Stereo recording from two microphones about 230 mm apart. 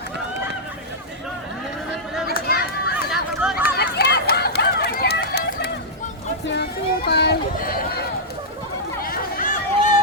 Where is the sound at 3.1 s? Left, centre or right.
Centre.